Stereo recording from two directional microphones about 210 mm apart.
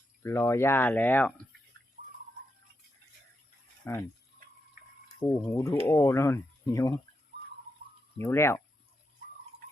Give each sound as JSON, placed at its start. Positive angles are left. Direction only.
{"t": 0.2, "sound": "speech", "side_deg": 15}
{"t": 3.9, "sound": "speech", "side_deg": 10}
{"t": 5.0, "sound": "speech", "side_deg": 15}
{"t": 8.2, "sound": "speech", "side_deg": 10}